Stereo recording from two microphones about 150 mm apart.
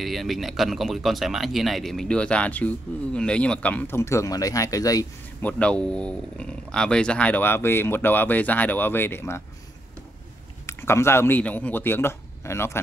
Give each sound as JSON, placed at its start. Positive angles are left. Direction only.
{"t": 0.0, "sound": "speech", "side_deg": 0}
{"t": 5.4, "sound": "speech", "side_deg": 10}
{"t": 10.7, "sound": "speech", "side_deg": 15}